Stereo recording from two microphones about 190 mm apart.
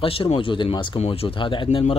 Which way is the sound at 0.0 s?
30° left (ahead or behind).